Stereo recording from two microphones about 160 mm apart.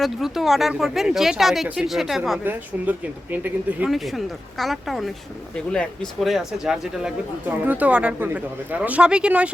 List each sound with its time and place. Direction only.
0.0 s speech: centre (ahead or behind)
2.4 s speech: 10° right (ahead or behind)
3.8 s speech: centre (ahead or behind)